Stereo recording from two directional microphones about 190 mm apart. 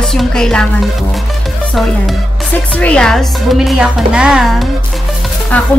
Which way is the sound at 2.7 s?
5° left (ahead or behind).